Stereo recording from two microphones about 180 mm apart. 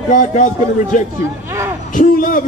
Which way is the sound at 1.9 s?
50° left (ahead or behind).